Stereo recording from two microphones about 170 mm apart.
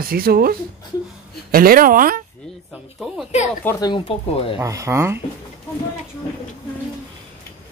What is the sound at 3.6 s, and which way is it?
Speech, 25° left (ahead or behind).